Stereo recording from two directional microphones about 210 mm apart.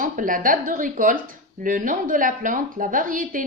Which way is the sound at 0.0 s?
40° right (ahead or behind).